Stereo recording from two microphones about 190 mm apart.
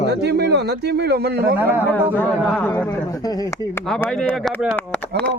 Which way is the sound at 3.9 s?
5° left (ahead or behind).